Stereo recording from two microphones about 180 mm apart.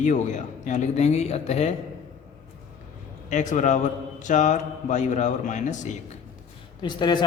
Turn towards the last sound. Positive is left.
turn(degrees=25)  # may be behind; listen again after turning